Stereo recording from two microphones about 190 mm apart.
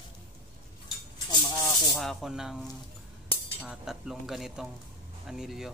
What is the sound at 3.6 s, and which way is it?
Speech, centre (ahead or behind).